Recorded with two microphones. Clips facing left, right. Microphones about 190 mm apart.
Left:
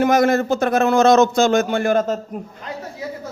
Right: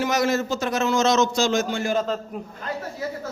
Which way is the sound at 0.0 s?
55° left (ahead or behind).